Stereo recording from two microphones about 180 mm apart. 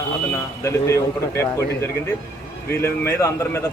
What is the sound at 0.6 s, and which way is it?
Speech, 15° left (ahead or behind).